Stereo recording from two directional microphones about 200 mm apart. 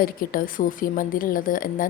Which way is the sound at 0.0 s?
45° left (ahead or behind).